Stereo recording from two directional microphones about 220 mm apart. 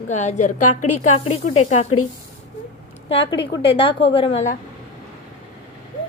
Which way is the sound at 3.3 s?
25° left (ahead or behind).